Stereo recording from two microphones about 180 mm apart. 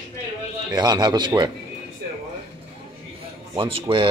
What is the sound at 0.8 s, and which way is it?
Speech, 25° right (ahead or behind).